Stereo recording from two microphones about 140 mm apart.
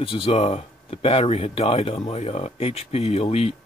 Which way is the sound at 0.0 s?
40° left (ahead or behind).